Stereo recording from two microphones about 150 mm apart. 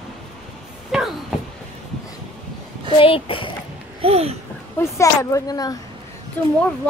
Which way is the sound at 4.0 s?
40° right (ahead or behind).